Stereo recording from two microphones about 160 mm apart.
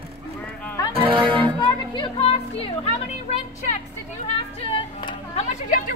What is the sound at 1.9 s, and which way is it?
Speech, 30° left (ahead or behind).